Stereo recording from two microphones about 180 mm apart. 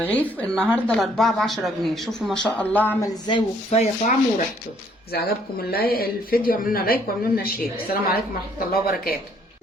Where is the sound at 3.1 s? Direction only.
20° left (ahead or behind).